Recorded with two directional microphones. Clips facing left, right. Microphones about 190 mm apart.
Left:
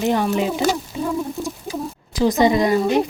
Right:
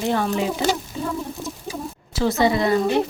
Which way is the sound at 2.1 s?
15° left (ahead or behind).